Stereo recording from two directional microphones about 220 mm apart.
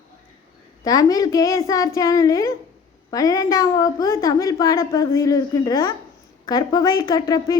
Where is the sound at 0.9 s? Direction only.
15° left (ahead or behind).